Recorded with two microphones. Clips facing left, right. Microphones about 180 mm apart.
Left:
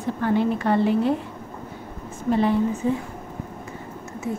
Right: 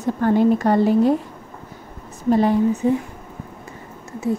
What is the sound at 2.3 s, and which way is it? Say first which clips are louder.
Speech: right 4 dB; 40° right (ahead or behind).